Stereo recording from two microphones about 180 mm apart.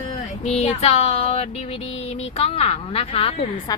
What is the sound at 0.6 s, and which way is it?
Child singing, 35° left (ahead or behind).